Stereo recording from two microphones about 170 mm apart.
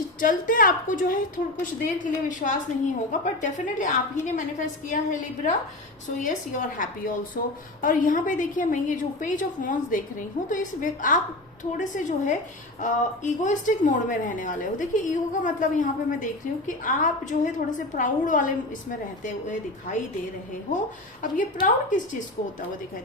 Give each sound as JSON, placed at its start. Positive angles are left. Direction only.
{"t": 0.2, "sound": "a woman's voice", "side_deg": 55}
{"t": 2.4, "sound": "a woman's voice", "side_deg": 45}
{"t": 21.2, "sound": "a woman's voice", "side_deg": 50}